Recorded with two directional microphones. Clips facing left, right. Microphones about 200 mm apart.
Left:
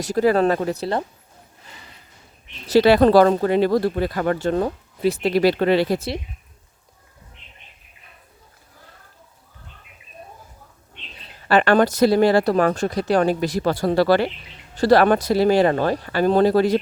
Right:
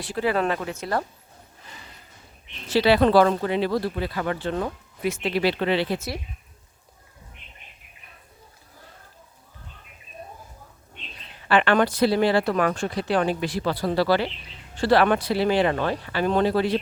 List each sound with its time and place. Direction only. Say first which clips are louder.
0.0 s speech: left 7 dB; 40° left (ahead or behind)
2.6 s speech: left 5 dB; 45° left (ahead or behind)
11.4 s speech: left 4 dB; 40° left (ahead or behind)